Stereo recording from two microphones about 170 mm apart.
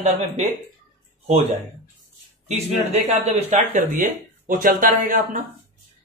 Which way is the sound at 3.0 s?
45° right (ahead or behind).